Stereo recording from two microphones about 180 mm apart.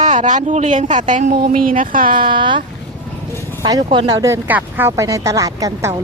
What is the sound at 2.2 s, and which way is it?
Speech, 25° right (ahead or behind).